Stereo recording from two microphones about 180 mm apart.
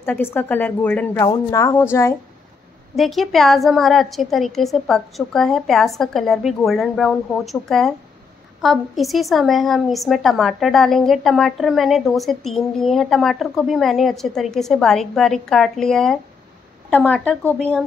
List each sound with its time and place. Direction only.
0.0 s a woman's voice: 10° left (ahead or behind)
3.0 s a woman's voice: centre (ahead or behind)